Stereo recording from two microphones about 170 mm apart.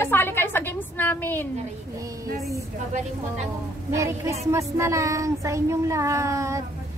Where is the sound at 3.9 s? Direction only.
20° right (ahead or behind).